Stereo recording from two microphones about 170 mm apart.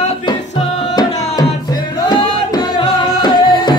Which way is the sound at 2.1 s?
25° left (ahead or behind).